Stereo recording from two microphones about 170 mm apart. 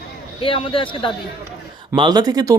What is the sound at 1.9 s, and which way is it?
Speech, 25° right (ahead or behind).